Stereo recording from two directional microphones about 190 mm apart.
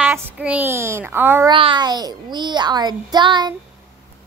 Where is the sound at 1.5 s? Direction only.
25° right (ahead or behind).